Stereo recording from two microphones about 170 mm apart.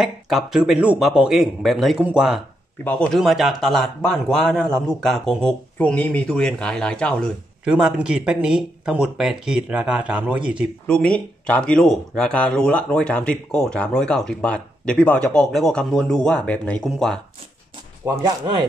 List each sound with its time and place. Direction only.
0.0 s speech: centre (ahead or behind)
7.7 s speech: 5° right (ahead or behind)
10.9 s speech: 5° left (ahead or behind)
18.0 s speech: 25° right (ahead or behind)